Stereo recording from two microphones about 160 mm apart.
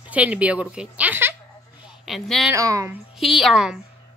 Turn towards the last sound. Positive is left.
turn(degrees=0)  # may be behind; listen again after turning